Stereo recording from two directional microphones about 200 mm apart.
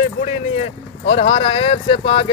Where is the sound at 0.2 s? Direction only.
30° left (ahead or behind).